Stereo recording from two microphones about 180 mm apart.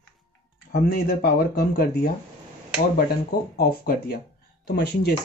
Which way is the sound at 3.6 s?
60° left (ahead or behind).